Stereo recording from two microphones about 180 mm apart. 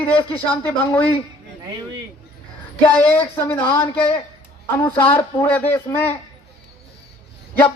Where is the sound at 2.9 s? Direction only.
10° left (ahead or behind).